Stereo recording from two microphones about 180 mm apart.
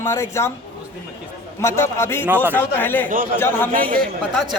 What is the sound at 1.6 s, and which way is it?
A man's voice, 15° left (ahead or behind).